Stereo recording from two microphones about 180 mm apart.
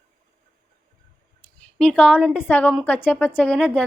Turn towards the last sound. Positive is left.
turn(degrees=10)  # may be behind; listen again after turning